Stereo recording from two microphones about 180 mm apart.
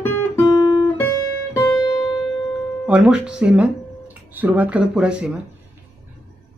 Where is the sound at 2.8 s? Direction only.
5° right (ahead or behind).